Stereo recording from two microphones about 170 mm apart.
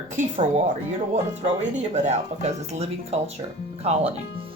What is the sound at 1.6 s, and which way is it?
Speech, 45° right (ahead or behind).